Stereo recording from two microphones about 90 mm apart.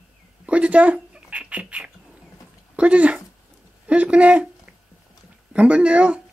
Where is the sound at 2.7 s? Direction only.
15° right (ahead or behind).